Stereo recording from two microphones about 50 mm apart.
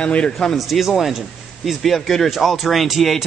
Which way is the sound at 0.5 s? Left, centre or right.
Centre.